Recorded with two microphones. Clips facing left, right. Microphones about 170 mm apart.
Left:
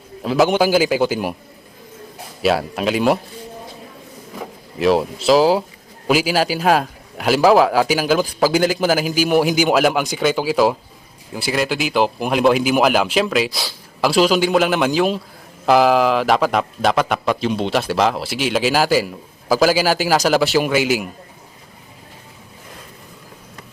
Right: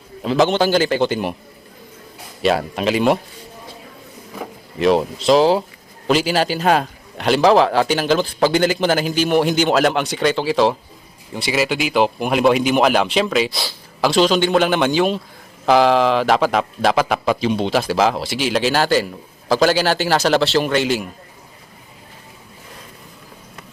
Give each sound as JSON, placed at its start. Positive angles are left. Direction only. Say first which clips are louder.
{"t": 0.2, "sound": "speech", "louder": "left 1 dB", "side_deg": 5}
{"t": 2.4, "sound": "speech", "louder": "even", "side_deg": 5}
{"t": 4.8, "sound": "speech", "louder": "even", "side_deg": 5}